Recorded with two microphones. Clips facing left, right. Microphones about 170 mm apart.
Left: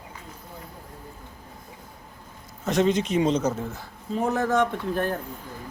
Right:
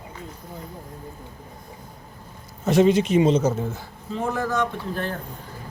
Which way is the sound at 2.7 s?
5° right (ahead or behind).